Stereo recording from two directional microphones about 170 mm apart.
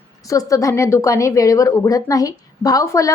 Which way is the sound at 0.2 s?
20° left (ahead or behind).